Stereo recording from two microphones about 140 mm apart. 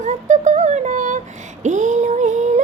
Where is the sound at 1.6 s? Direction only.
60° right (ahead or behind).